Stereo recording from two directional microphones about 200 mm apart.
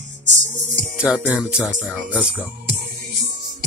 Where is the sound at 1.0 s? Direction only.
5° right (ahead or behind).